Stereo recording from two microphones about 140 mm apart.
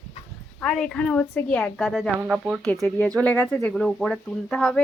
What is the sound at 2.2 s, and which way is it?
Speech, 5° right (ahead or behind).